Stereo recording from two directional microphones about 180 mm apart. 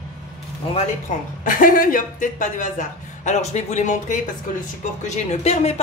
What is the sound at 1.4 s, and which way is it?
Speech, 50° left (ahead or behind).